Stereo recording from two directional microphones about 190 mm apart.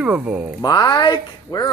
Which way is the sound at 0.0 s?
5° right (ahead or behind).